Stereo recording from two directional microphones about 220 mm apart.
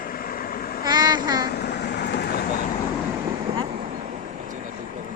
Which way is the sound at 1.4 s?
50° left (ahead or behind).